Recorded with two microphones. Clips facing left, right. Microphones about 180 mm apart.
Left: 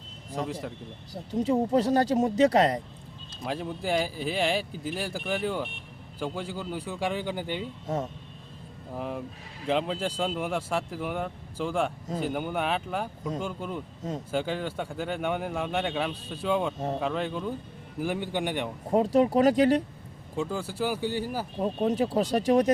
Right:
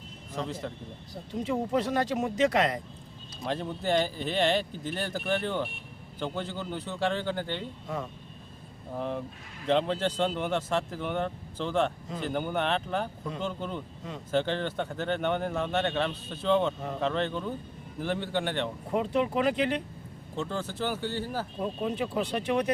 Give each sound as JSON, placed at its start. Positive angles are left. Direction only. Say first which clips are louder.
{"t": 1.1, "sound": "speech", "louder": "left 5 dB", "side_deg": 35}
{"t": 3.4, "sound": "speech", "louder": "even", "side_deg": 5}
{"t": 7.9, "sound": "speech", "louder": "left 4 dB", "side_deg": 40}
{"t": 9.0, "sound": "speech", "louder": "right 1 dB", "side_deg": 5}
{"t": 18.9, "sound": "speech", "louder": "left 7 dB", "side_deg": 40}
{"t": 20.3, "sound": "speech", "louder": "left 2 dB", "side_deg": 10}
{"t": 21.6, "sound": "speech", "louder": "left 6 dB", "side_deg": 40}